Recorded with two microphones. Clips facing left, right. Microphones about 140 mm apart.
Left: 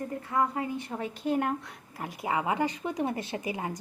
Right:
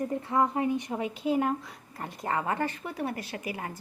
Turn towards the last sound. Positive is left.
turn(degrees=20)  # may be behind; listen again after turning